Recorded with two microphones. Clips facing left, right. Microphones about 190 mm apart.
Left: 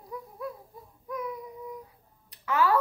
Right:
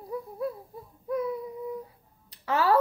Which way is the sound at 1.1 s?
30° right (ahead or behind).